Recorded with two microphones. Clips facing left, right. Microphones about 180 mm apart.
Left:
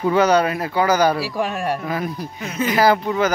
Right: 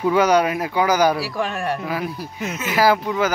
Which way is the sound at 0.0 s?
10° right (ahead or behind).